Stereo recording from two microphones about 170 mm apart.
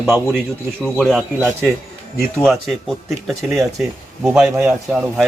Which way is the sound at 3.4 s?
15° right (ahead or behind).